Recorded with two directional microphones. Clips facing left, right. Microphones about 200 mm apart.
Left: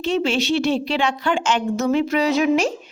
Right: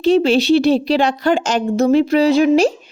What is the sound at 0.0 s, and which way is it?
A woman's voice, 35° right (ahead or behind).